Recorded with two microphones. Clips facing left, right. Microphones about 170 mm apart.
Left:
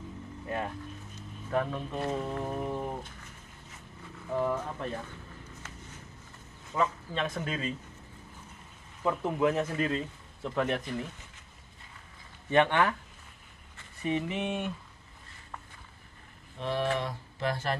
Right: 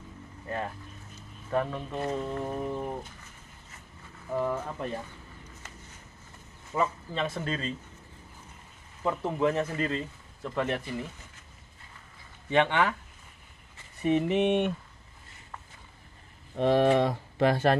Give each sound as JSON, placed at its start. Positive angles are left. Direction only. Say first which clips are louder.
{"t": 1.5, "sound": "speech", "louder": "right 1 dB", "side_deg": 0}
{"t": 4.3, "sound": "speech", "louder": "even", "side_deg": -5}
{"t": 6.7, "sound": "speech", "louder": "right 1 dB", "side_deg": -5}
{"t": 9.0, "sound": "speech", "louder": "even", "side_deg": 0}
{"t": 12.6, "sound": "speech", "louder": "even", "side_deg": -5}
{"t": 14.0, "sound": "speech", "louder": "right 7 dB", "side_deg": -55}
{"t": 16.5, "sound": "speech", "louder": "right 8 dB", "side_deg": -60}